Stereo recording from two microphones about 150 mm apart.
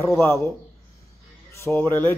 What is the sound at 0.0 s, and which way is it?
Speech, 15° left (ahead or behind).